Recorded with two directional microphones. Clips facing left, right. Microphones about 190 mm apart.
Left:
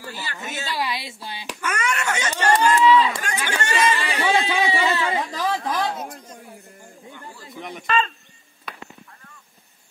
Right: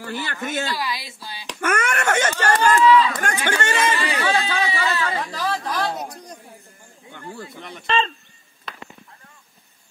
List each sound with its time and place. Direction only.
0.0 s speech: 55° right (ahead or behind)
0.7 s speech: 25° left (ahead or behind)
1.6 s wail: 50° right (ahead or behind)
2.5 s a sound: 20° left (ahead or behind)
3.4 s chatter: 50° right (ahead or behind)
4.0 s chatter: 20° left (ahead or behind)
5.9 s a sound: 40° right (ahead or behind)
7.8 s a man's voice: 30° right (ahead or behind)
8.7 s a sound: 10° left (ahead or behind)